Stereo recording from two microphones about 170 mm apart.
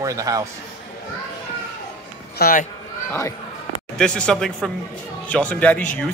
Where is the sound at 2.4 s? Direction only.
55° left (ahead or behind).